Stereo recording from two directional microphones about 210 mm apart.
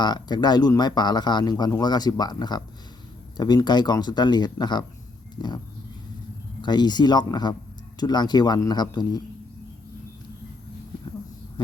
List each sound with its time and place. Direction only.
0.0 s speech: 20° left (ahead or behind)
6.6 s speech: 20° left (ahead or behind)